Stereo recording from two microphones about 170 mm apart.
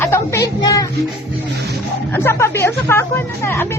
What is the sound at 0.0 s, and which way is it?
Music, 15° left (ahead or behind).